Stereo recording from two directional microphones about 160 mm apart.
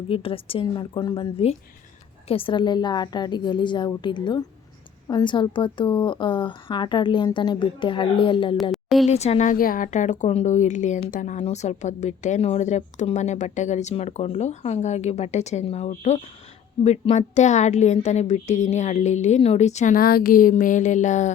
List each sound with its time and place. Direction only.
0.1 s a woman's voice: 35° left (ahead or behind)
8.7 s a sound: centre (ahead or behind)
9.0 s a woman's voice: 40° left (ahead or behind)